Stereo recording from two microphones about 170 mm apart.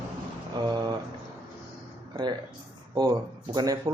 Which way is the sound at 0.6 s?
25° right (ahead or behind).